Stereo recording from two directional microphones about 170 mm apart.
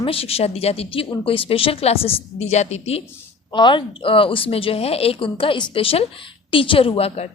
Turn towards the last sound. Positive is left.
turn(degrees=35)  # may be behind; listen again after turning